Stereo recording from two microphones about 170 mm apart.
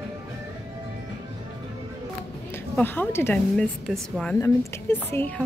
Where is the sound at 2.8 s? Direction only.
10° left (ahead or behind).